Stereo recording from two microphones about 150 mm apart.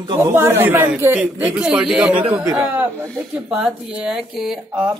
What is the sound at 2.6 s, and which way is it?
Speech, 20° right (ahead or behind).